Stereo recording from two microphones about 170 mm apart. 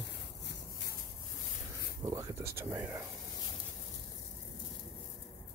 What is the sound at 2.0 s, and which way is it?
Speech, 20° right (ahead or behind).